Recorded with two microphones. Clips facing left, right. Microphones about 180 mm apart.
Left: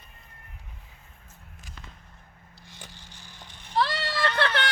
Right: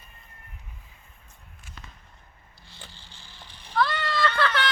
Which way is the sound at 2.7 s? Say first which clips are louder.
Left 1 dB; 15° left (ahead or behind).